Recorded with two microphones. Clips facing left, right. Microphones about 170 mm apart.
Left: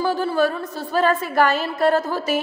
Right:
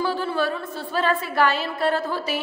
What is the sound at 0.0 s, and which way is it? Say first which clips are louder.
A woman's voice: left 4 dB; 40° left (ahead or behind).